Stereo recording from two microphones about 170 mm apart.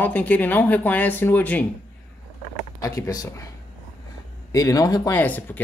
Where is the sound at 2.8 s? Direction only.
20° left (ahead or behind).